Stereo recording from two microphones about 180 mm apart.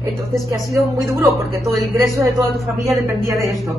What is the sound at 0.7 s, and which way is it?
A woman's voice, 15° right (ahead or behind).